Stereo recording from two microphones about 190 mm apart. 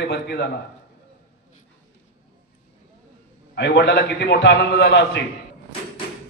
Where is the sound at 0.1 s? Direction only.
60° left (ahead or behind).